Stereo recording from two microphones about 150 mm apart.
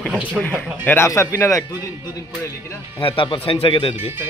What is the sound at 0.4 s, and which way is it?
A man's voice, 10° left (ahead or behind).